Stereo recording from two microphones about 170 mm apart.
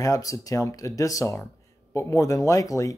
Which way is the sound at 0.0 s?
20° left (ahead or behind).